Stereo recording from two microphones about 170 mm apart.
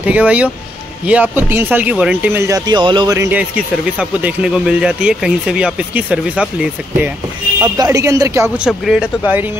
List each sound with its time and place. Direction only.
0.0 s speech: 10° right (ahead or behind)
7.6 s speech: 20° right (ahead or behind)
8.5 s speech: 5° right (ahead or behind)